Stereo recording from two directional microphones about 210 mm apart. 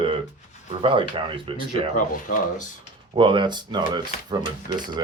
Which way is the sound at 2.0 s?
40° left (ahead or behind).